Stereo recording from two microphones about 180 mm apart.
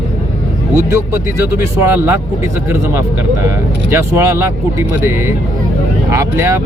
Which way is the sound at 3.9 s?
15° right (ahead or behind).